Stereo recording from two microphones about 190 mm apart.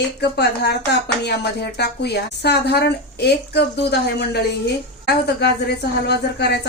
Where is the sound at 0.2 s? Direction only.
60° left (ahead or behind).